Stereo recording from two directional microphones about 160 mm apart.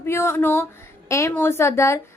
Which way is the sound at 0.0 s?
15° left (ahead or behind).